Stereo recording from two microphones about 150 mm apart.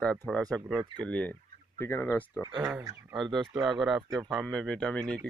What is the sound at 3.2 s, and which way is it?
Speech, centre (ahead or behind).